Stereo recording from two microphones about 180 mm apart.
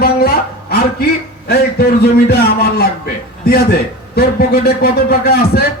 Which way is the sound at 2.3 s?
60° left (ahead or behind).